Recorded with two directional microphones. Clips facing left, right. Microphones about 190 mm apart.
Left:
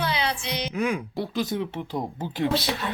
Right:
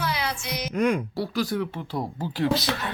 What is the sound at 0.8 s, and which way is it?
Speech, 5° left (ahead or behind).